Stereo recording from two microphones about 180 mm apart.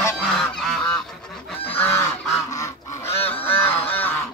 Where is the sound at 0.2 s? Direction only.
Centre (ahead or behind).